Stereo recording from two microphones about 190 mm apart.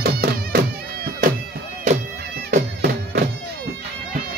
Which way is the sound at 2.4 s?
60° right (ahead or behind).